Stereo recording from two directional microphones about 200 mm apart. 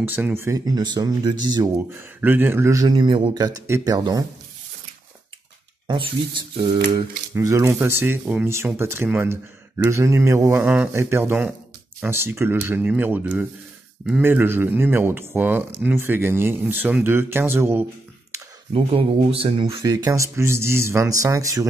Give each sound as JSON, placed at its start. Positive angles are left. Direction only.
{"t": 0.1, "sound": "speech", "side_deg": -10}
{"t": 7.3, "sound": "speech", "side_deg": -15}
{"t": 18.7, "sound": "speech", "side_deg": -25}